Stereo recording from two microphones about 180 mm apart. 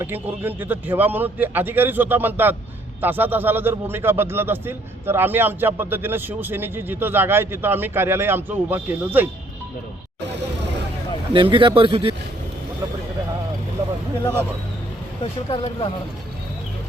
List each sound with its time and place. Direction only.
0.0 s a man's voice: 10° right (ahead or behind)
11.3 s speech: 25° right (ahead or behind)
15.2 s speech: 30° left (ahead or behind)